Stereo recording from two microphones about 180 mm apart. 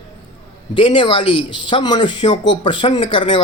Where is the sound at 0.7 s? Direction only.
30° left (ahead or behind).